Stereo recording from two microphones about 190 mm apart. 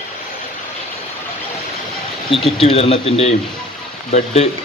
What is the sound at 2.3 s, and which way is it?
Speech, 30° left (ahead or behind).